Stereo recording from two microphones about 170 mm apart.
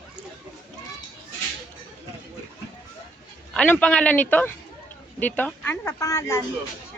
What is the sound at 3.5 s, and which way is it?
A woman's voice, 5° left (ahead or behind).